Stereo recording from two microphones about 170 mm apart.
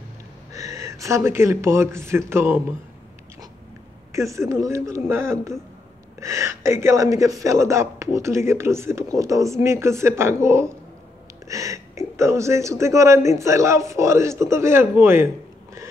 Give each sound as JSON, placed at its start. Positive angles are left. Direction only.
{"t": 0.7, "sound": "speech", "side_deg": -20}
{"t": 4.1, "sound": "speech", "side_deg": -15}